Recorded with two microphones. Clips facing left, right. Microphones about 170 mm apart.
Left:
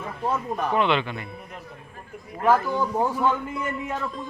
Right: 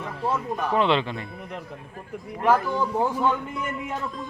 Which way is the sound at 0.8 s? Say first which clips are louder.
Right 2 dB; 30° right (ahead or behind).